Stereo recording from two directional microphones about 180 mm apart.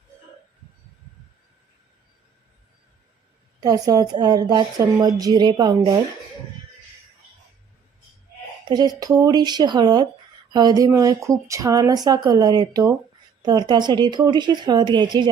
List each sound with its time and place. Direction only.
3.6 s speech: 20° right (ahead or behind)
8.6 s speech: 20° right (ahead or behind)